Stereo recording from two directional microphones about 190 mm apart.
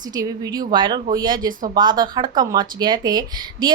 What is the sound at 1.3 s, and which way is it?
Speech, 45° right (ahead or behind).